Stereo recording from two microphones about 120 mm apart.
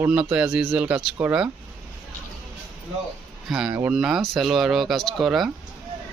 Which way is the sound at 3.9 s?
5° right (ahead or behind).